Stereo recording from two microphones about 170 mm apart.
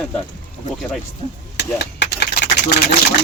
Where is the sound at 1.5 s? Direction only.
85° left.